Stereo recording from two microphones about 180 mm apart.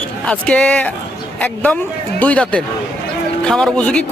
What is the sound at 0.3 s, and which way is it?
A man's voice, 5° left (ahead or behind).